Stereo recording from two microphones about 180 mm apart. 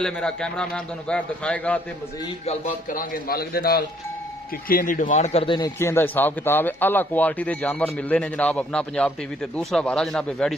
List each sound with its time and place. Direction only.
0.0 s a man's voice: 5° left (ahead or behind)
2.4 s a man's voice: 50° left (ahead or behind); by 5.7 s 30° left (ahead or behind)
5.8 s speech: 15° left (ahead or behind)